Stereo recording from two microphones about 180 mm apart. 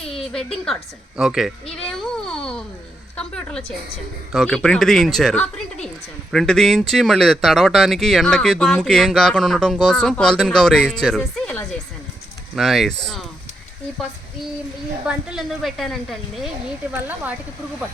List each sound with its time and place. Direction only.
0.2 s a woman's voice: centre (ahead or behind)
15.0 s speech: 5° right (ahead or behind)
16.9 s speech: 10° right (ahead or behind)